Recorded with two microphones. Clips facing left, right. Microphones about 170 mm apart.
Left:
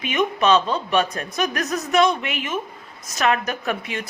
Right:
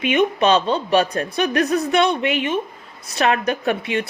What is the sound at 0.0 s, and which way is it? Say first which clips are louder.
A woman's voice: right 4 dB; 30° right (ahead or behind).